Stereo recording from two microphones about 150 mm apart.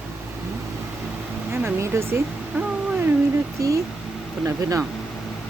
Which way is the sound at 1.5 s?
15° right (ahead or behind).